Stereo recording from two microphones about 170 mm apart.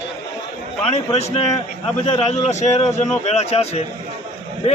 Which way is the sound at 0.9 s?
40° left (ahead or behind).